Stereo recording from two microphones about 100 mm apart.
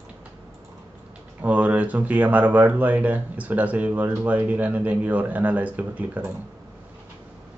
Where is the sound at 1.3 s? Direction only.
15° right (ahead or behind).